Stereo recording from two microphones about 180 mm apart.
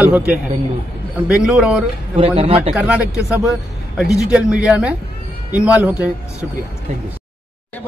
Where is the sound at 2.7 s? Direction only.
5° right (ahead or behind).